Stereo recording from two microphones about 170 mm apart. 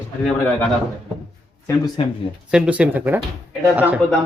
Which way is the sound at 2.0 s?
30° left (ahead or behind).